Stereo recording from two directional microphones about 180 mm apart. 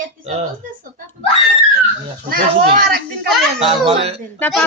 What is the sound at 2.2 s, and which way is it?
Speech, 55° right (ahead or behind).